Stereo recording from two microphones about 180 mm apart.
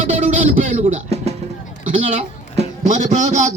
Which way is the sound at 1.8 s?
45° right (ahead or behind).